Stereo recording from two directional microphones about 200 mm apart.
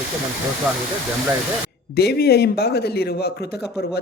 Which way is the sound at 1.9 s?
55° left (ahead or behind).